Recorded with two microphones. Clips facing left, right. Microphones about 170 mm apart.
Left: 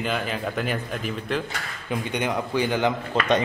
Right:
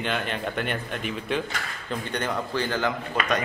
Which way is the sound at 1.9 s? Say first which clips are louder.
Left 3 dB; 10° left (ahead or behind).